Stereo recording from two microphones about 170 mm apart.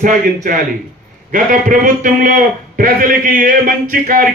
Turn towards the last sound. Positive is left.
turn(degrees=-55)  # may be behind; listen again after turning